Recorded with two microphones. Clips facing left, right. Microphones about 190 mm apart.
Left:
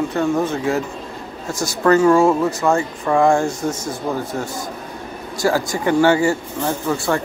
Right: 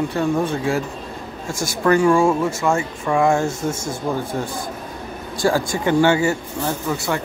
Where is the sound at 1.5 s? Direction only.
25° right (ahead or behind).